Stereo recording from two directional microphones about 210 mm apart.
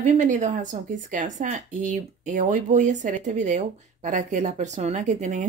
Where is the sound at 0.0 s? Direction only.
35° right (ahead or behind).